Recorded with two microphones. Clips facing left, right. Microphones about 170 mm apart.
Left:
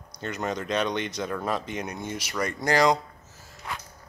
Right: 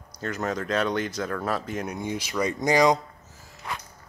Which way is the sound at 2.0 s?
15° right (ahead or behind).